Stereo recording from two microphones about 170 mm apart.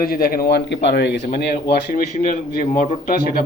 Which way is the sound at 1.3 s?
65° left (ahead or behind).